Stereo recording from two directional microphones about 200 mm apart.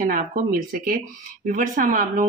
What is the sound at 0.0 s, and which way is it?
Speech, 45° right (ahead or behind).